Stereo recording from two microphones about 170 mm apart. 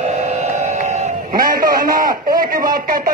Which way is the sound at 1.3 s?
55° right (ahead or behind).